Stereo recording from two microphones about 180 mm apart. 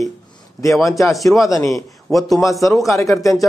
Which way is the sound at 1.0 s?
Centre (ahead or behind).